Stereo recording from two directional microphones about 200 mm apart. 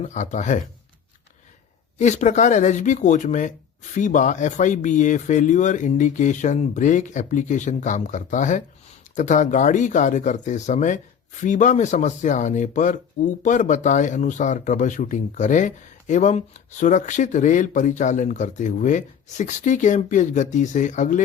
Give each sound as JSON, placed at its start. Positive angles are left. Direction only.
{"t": 0.0, "sound": "speech", "side_deg": 35}
{"t": 2.0, "sound": "speech", "side_deg": 35}